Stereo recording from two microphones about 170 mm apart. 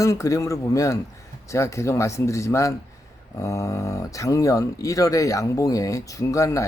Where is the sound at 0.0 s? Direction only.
20° left (ahead or behind).